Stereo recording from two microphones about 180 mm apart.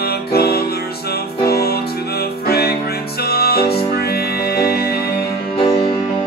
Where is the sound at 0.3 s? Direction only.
60° left (ahead or behind).